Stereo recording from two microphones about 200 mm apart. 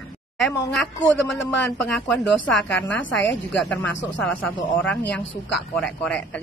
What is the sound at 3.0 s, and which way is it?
Speech, 65° left (ahead or behind).